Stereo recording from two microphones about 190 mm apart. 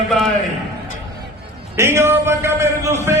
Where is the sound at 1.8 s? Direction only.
15° right (ahead or behind).